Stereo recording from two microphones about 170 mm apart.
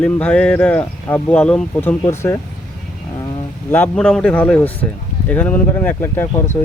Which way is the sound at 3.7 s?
5° left (ahead or behind).